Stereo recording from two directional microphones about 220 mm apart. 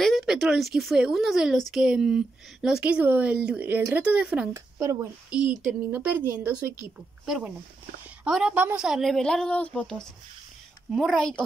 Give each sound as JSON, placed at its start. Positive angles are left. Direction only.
{"t": 0.0, "sound": "speech", "side_deg": 0}